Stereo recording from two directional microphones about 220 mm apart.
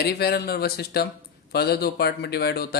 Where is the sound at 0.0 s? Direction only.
45° left (ahead or behind).